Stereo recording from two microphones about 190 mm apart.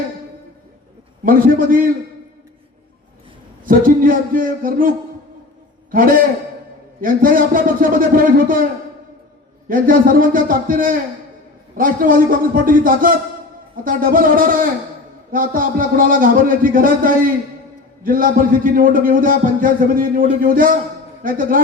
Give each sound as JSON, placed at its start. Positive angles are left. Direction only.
{"t": 1.2, "sound": "a man's voice", "side_deg": -45}
{"t": 3.6, "sound": "a man's voice", "side_deg": -45}
{"t": 5.9, "sound": "a man's voice", "side_deg": -45}
{"t": 9.6, "sound": "a man's voice", "side_deg": -45}